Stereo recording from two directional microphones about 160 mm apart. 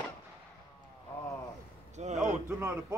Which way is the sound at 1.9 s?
45° right (ahead or behind).